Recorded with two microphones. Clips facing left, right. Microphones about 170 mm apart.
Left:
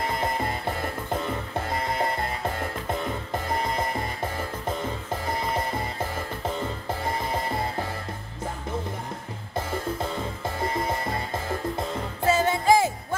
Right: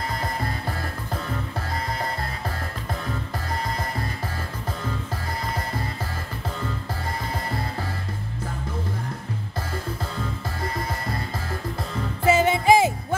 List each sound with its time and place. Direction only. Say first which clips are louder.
12.3 s music: right 3 dB; 20° right (ahead or behind)